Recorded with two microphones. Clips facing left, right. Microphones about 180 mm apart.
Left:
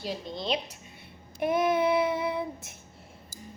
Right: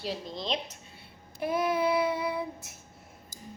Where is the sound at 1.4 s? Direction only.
20° left (ahead or behind).